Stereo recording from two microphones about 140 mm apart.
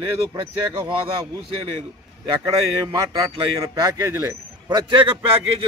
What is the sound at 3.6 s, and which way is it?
Speech, 25° right (ahead or behind).